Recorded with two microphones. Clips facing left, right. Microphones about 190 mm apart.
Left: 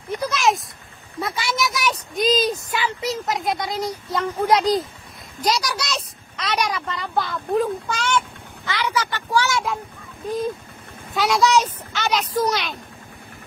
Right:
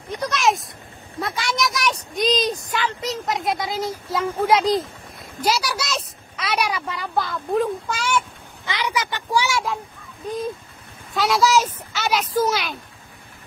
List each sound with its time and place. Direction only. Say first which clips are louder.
0.2 s a sound: even; centre (ahead or behind)
1.2 s a woman's voice: even; centre (ahead or behind)
8.6 s speech: left 1 dB; 15° right (ahead or behind)
11.1 s a woman's voice: even; centre (ahead or behind)